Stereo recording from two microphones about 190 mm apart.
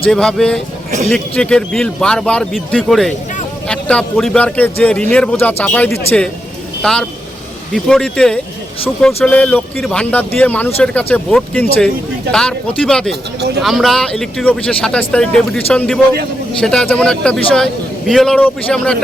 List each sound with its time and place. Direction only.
0.1 s speech: 5° left (ahead or behind)
0.9 s a man's voice: 40° right (ahead or behind)
1.1 s a man's voice: 5° left (ahead or behind)